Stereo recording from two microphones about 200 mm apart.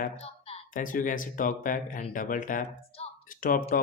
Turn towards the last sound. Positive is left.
turn(degrees=45)  # may be behind; listen again after turning